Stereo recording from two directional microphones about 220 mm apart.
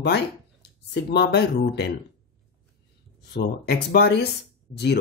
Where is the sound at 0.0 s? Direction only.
50° left (ahead or behind).